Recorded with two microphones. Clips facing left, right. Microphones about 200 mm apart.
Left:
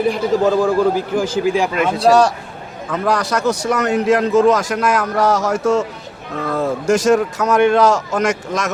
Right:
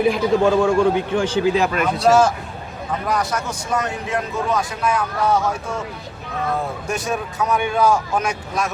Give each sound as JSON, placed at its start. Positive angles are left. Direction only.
{"t": 0.0, "sound": "a man's voice", "side_deg": 0}
{"t": 1.7, "sound": "a man's voice", "side_deg": 25}
{"t": 2.9, "sound": "a man's voice", "side_deg": 75}